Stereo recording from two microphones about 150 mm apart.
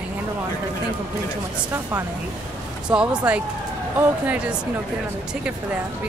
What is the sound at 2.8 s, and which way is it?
Speech, 10° right (ahead or behind).